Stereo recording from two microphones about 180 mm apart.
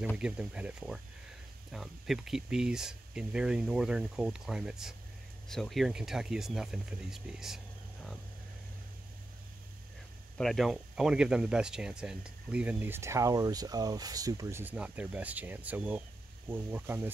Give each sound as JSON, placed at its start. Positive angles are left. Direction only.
{"t": 0.2, "sound": "speech", "side_deg": -5}
{"t": 10.3, "sound": "speech", "side_deg": 0}